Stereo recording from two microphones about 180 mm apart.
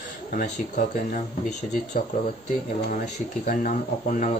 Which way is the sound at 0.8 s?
45° left (ahead or behind).